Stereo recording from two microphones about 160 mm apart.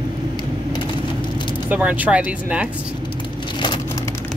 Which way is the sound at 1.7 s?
10° right (ahead or behind).